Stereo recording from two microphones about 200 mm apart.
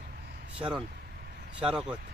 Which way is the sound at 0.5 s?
5° right (ahead or behind).